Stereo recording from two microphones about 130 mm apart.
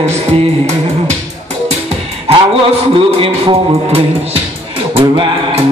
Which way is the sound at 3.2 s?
45° right (ahead or behind).